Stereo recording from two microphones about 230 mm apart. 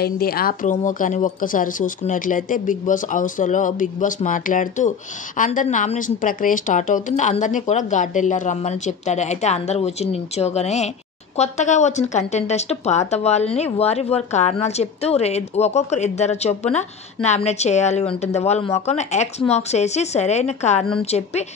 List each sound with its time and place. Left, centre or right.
0.0 s a woman's voice: left